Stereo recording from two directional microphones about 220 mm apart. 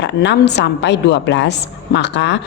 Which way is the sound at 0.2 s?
50° left (ahead or behind).